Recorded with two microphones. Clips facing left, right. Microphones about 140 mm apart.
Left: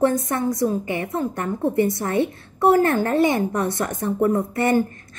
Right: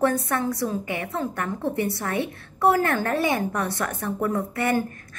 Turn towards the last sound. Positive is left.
turn(degrees=25)  # may be behind; listen again after turning